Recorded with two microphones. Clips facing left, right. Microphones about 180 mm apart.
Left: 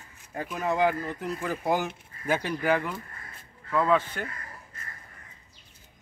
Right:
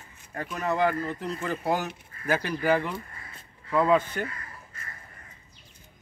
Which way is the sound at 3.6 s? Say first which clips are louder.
Right 2 dB; 10° right (ahead or behind).